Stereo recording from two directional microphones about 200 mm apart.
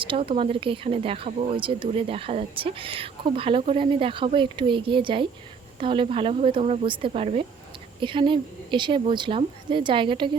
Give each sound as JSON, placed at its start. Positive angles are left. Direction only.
{"t": 0.0, "sound": "speech", "side_deg": -25}